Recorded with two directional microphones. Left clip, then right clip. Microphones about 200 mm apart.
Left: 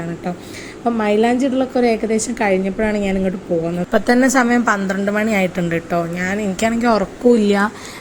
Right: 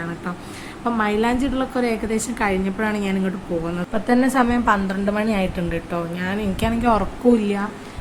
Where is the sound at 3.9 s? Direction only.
30° left (ahead or behind).